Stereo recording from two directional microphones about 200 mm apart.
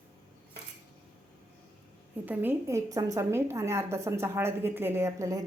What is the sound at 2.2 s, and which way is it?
A woman's voice, 10° right (ahead or behind).